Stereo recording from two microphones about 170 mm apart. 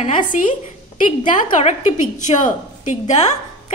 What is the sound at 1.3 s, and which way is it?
A woman's voice, 45° left (ahead or behind).